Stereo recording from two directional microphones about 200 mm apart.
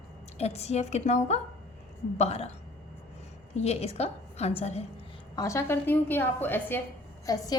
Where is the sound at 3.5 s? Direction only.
30° left (ahead or behind).